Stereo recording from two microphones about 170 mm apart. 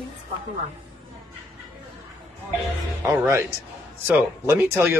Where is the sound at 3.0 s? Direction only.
15° right (ahead or behind).